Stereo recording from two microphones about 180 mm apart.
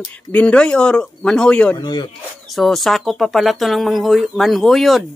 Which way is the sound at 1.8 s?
25° left (ahead or behind).